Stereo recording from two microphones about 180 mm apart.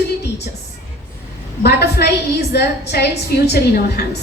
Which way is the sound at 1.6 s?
65° left (ahead or behind).